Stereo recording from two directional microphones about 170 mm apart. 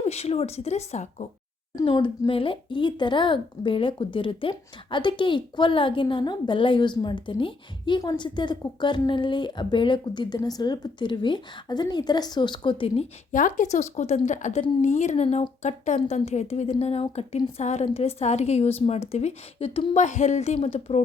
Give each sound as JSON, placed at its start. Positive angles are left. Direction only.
{"t": 0.0, "sound": "a woman's voice", "side_deg": 40}
{"t": 1.7, "sound": "speech", "side_deg": 30}
{"t": 13.3, "sound": "a woman's voice", "side_deg": 50}